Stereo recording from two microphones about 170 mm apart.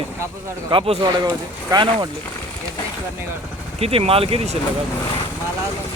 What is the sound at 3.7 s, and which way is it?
Speech, 35° right (ahead or behind).